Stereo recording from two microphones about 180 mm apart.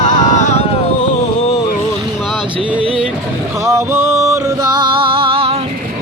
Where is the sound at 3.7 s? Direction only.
15° right (ahead or behind); by 5.5 s 30° right (ahead or behind).